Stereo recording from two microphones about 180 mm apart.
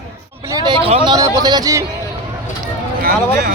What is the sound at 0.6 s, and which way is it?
Speech, 30° right (ahead or behind).